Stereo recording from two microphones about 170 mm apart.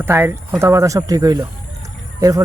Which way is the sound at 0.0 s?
10° right (ahead or behind).